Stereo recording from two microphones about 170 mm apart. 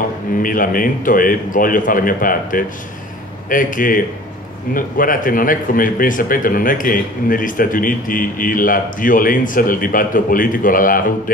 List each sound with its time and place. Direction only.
0.4 s a man's voice: 55° left (ahead or behind)